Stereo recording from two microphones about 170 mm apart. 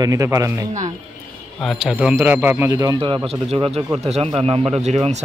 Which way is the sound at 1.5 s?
Centre (ahead or behind).